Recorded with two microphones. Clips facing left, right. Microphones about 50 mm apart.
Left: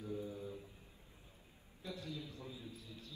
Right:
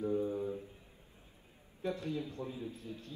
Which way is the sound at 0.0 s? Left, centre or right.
Right.